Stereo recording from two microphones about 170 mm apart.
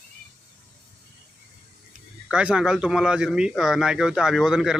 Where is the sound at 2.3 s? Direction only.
5° right (ahead or behind).